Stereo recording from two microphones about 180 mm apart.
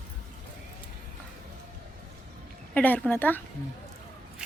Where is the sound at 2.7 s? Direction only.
10° left (ahead or behind).